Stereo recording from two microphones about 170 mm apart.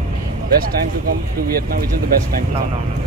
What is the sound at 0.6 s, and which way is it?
Speech, 60° right (ahead or behind).